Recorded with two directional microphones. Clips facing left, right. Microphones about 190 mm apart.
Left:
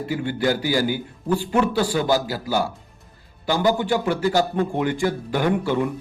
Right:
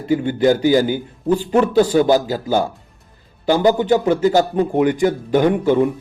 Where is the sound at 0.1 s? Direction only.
20° right (ahead or behind).